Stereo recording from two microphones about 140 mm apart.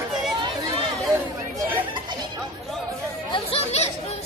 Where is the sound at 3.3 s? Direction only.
45° left (ahead or behind).